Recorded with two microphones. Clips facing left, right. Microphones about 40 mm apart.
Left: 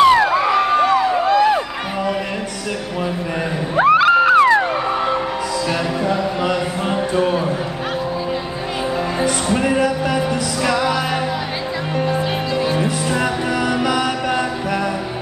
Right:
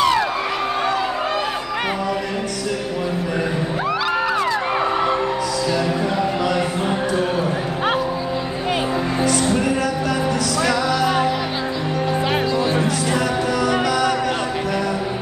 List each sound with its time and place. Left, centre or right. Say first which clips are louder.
0.0 s a sound: left 6 dB; left
3.7 s music: left 12 dB; left
6.4 s a sound: even; left
9.2 s music: even; left
12.8 s music: left 1 dB; left
13.8 s mantra: even; left